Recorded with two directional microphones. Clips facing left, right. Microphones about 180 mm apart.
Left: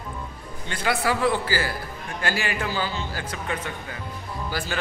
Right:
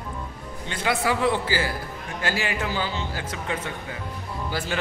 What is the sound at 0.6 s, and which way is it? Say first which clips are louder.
Speech: even; 20° right (ahead or behind).